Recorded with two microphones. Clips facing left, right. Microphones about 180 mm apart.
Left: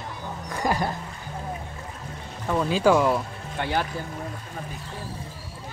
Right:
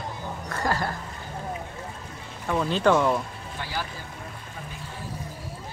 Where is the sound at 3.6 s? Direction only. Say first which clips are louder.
Left 7 dB; 60° left (ahead or behind).